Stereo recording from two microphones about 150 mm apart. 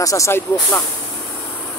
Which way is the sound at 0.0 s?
20° left (ahead or behind).